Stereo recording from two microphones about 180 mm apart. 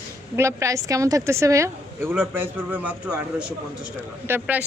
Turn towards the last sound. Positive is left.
turn(degrees=-10)  # may be behind; listen again after turning